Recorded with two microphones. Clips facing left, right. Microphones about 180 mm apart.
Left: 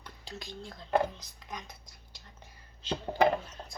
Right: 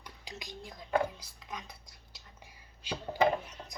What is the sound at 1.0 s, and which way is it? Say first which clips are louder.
Speech: left 1 dB; 10° right (ahead or behind).